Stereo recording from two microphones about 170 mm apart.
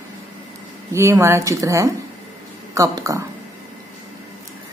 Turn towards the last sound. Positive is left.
turn(degrees=-20)  # may be behind; listen again after turning